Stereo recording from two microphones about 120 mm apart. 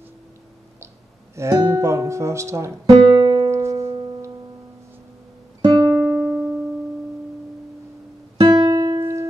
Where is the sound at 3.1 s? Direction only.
40° right (ahead or behind).